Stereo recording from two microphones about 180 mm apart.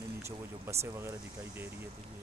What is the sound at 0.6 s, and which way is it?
Speech, 15° right (ahead or behind).